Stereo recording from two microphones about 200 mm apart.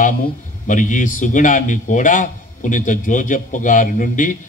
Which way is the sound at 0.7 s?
40° left (ahead or behind).